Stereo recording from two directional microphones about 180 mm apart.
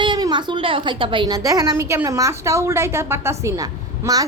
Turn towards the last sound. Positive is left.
turn(degrees=-15)  # may be behind; listen again after turning